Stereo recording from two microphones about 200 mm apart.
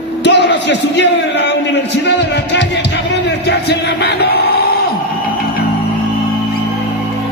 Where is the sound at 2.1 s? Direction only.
60° left (ahead or behind).